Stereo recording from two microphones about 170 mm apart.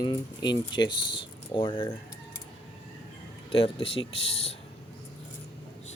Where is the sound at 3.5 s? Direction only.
35° left (ahead or behind).